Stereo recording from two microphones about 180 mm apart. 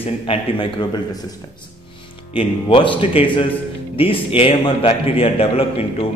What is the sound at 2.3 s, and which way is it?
A man's voice, 30° left (ahead or behind).